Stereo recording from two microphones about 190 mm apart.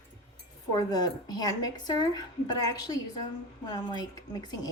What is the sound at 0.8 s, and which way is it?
A woman's voice, 20° left (ahead or behind).